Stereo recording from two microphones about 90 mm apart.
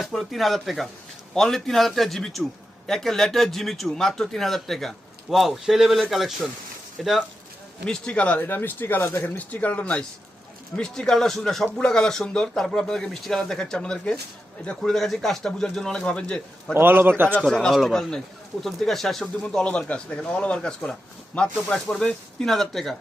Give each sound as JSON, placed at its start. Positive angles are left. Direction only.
{"t": 0.0, "sound": "a man's voice", "side_deg": 0}
{"t": 7.9, "sound": "speech", "side_deg": 10}
{"t": 16.7, "sound": "a man's voice", "side_deg": -25}
{"t": 17.5, "sound": "a man's voice", "side_deg": 5}